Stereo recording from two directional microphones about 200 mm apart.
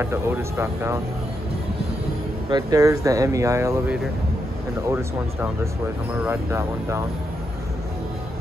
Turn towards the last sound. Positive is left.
turn(degrees=-15)  # may be behind; listen again after turning